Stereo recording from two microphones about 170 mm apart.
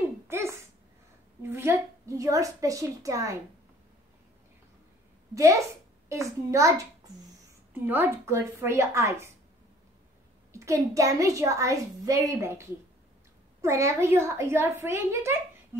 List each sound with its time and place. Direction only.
0.3 s a sound: 15° right (ahead or behind)
1.4 s a woman's voice: 15° right (ahead or behind)
5.3 s a woman's voice: 20° right (ahead or behind)
7.8 s a child's voice: 15° right (ahead or behind)
10.5 s a child's voice: 15° right (ahead or behind)